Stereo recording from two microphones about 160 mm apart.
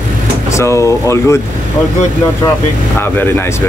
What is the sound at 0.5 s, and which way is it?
Speech, 20° left (ahead or behind).